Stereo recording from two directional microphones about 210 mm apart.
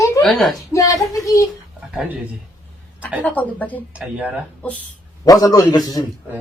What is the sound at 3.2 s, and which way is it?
Speech, 10° left (ahead or behind).